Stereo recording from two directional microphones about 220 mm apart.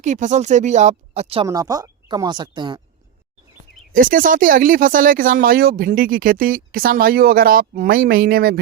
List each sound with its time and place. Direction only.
0.0 s speech: 35° right (ahead or behind)
1.5 s speech: 15° right (ahead or behind)
3.9 s speech: 40° right (ahead or behind)